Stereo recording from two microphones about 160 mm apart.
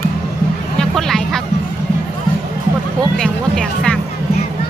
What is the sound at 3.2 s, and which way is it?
Speech, 5° left (ahead or behind).